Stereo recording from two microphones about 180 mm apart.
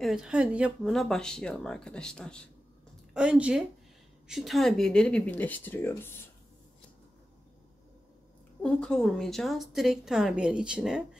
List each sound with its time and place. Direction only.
0.0 s a woman's voice: 5° right (ahead or behind); by 6.2 s 10° left (ahead or behind)
8.6 s a woman's voice: 5° left (ahead or behind)